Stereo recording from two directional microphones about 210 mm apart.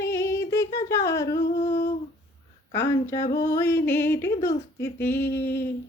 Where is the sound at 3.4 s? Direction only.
10° left (ahead or behind).